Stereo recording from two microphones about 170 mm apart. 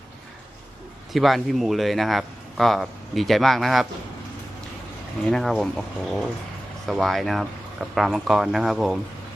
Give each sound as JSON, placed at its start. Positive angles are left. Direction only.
{"t": 1.1, "sound": "speech", "side_deg": 0}
{"t": 5.3, "sound": "speech", "side_deg": 0}